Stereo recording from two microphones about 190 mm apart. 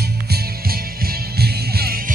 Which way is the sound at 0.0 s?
55° right (ahead or behind).